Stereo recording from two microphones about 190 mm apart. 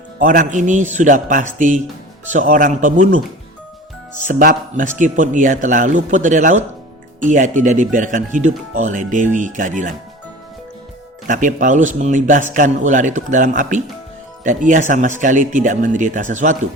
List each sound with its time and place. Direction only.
0.2 s a man's voice: 45° right (ahead or behind)
4.3 s a man's voice: 45° right (ahead or behind)
11.3 s speech: 40° right (ahead or behind)